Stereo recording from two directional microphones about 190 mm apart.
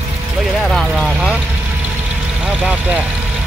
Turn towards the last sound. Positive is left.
turn(degrees=-5)  # may be behind; listen again after turning